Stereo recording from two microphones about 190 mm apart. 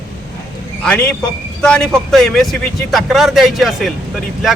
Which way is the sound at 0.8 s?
5° left (ahead or behind).